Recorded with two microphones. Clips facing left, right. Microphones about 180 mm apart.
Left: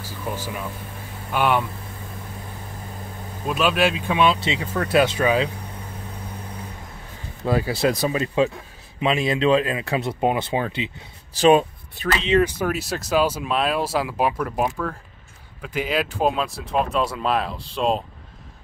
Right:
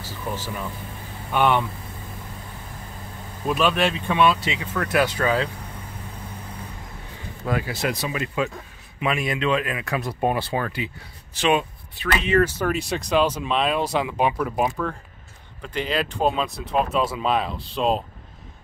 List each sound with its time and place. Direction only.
0.0 s speech: 10° left (ahead or behind)
3.4 s speech: 5° left (ahead or behind)
4.3 s speech: 25° left (ahead or behind)
7.4 s speech: 30° left (ahead or behind)
11.3 s speech: 40° left (ahead or behind)
12.2 s speech: 20° left (ahead or behind); by 18.0 s centre (ahead or behind)